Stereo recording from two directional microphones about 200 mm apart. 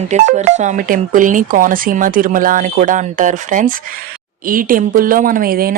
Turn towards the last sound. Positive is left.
turn(degrees=-45)  # may be behind; listen again after turning